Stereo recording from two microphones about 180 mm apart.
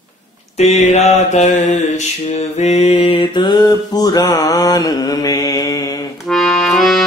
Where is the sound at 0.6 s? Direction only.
40° left (ahead or behind); by 5.7 s 20° left (ahead or behind).